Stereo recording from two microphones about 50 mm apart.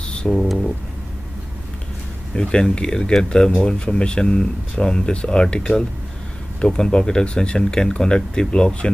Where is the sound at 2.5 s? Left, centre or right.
Centre.